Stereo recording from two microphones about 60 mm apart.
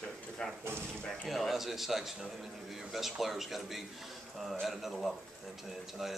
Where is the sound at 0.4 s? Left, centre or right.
Centre.